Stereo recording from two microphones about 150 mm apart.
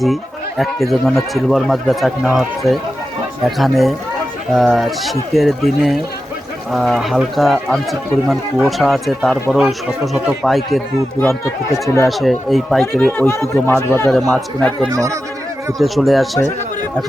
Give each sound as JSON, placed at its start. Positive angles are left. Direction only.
{"t": 0.6, "sound": "speech", "side_deg": 0}
{"t": 11.2, "sound": "speech", "side_deg": 20}
{"t": 12.0, "sound": "speech", "side_deg": 0}
{"t": 14.1, "sound": "speech", "side_deg": 0}
{"t": 14.9, "sound": "speech", "side_deg": -20}
{"t": 15.8, "sound": "speech", "side_deg": 0}